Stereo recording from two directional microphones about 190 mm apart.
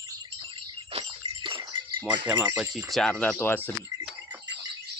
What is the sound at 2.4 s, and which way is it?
Speech, 5° right (ahead or behind).